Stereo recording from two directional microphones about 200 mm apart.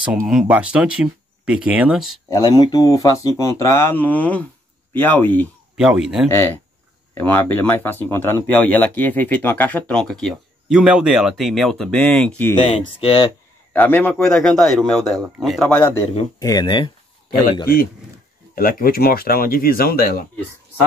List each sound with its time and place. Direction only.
0.3 s a man's voice: 5° right (ahead or behind)
2.2 s speech: 20° left (ahead or behind)
5.8 s a man's voice: 5° right (ahead or behind)
6.3 s speech: 10° left (ahead or behind)
12.5 s speech: 25° left (ahead or behind)
13.7 s a man's voice: 10° left (ahead or behind)
16.3 s speech: 20° left (ahead or behind)
18.5 s speech: 45° left (ahead or behind)